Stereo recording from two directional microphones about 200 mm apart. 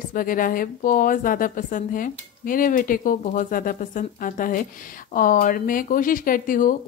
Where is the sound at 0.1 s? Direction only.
45° left (ahead or behind).